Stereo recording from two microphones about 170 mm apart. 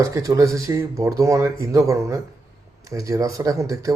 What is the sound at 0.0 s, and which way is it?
Speech, 20° right (ahead or behind).